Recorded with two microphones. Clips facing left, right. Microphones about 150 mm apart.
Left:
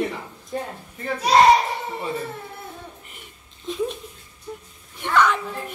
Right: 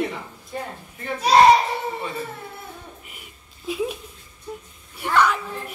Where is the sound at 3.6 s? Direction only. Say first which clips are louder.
Even; 5° right (ahead or behind).